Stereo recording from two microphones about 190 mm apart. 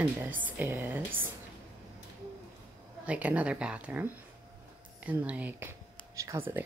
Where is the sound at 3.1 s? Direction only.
5° right (ahead or behind).